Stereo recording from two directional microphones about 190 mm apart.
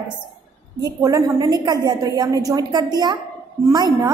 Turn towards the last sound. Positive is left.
turn(degrees=-20)  # may be behind; listen again after turning